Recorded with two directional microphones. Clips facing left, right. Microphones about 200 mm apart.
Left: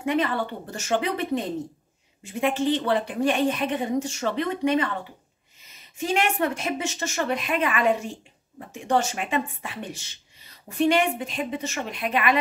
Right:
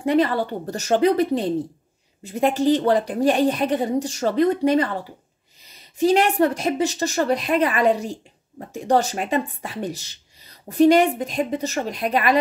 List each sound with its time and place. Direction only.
0.0 s a woman's voice: 35° right (ahead or behind)